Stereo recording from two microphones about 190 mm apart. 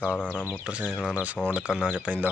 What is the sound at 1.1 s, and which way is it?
Speech, 10° right (ahead or behind).